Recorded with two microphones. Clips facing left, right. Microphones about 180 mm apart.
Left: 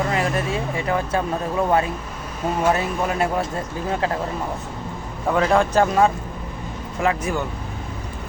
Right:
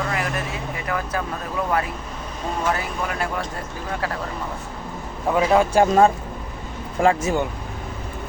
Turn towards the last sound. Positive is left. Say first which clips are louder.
# right 3 dB
turn(degrees=-30)  # may be behind; listen again after turning